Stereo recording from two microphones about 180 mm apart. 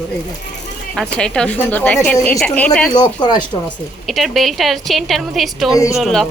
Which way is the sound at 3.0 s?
25° left (ahead or behind).